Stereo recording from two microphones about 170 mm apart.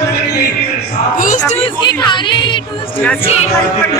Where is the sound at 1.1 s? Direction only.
50° left (ahead or behind).